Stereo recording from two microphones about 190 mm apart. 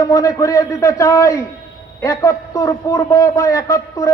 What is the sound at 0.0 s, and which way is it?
A man's voice, 20° left (ahead or behind).